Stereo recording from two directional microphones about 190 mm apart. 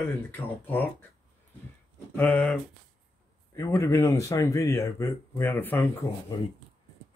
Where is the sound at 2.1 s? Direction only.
5° left (ahead or behind).